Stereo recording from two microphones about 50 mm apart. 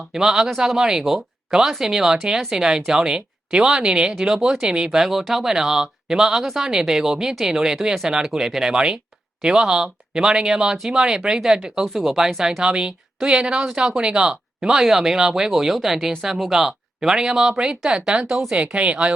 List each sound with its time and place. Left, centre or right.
0.1 s speech: centre